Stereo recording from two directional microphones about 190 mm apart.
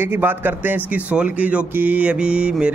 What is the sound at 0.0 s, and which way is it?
Speech, 10° right (ahead or behind).